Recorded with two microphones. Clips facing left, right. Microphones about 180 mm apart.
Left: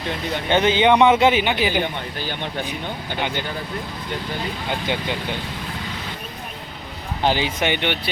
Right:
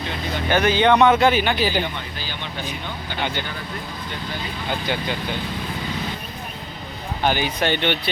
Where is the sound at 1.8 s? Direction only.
55° left (ahead or behind).